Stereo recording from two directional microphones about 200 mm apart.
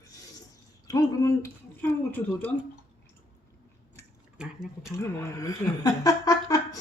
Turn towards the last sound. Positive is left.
turn(degrees=15)  # may be behind; listen again after turning